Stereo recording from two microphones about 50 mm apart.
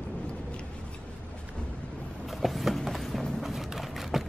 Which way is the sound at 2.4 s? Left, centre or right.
Centre.